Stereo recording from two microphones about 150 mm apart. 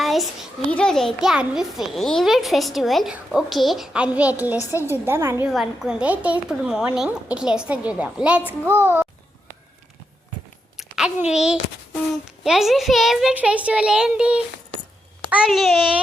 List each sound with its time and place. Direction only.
0.0 s a sound: centre (ahead or behind)
0.7 s a child's voice: 5° left (ahead or behind); by 5.5 s 15° right (ahead or behind)
5.5 s a child's voice: centre (ahead or behind)
10.8 s a child's voice: 5° right (ahead or behind)